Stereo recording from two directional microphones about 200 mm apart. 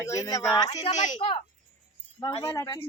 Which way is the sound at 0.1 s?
15° left (ahead or behind).